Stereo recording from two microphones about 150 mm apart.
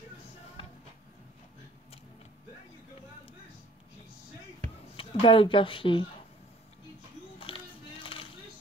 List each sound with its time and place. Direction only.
4.9 s speech: 35° left (ahead or behind)
7.3 s music: 35° left (ahead or behind)